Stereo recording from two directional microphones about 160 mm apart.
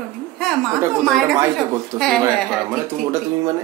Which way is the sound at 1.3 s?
20° right (ahead or behind).